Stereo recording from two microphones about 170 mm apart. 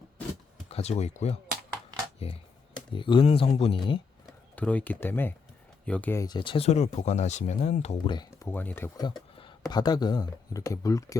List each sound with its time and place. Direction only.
0.7 s speech: 40° left (ahead or behind)
4.5 s speech: 10° left (ahead or behind)
6.2 s speech: 25° left (ahead or behind)
8.0 s speech: 25° left (ahead or behind)
8.3 s speech: 15° left (ahead or behind)
9.0 s speech: 25° left (ahead or behind)